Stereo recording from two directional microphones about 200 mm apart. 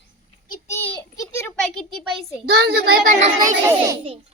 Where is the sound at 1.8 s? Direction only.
Centre (ahead or behind).